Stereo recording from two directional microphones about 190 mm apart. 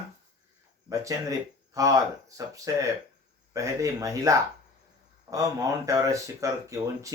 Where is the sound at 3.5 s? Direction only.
15° right (ahead or behind).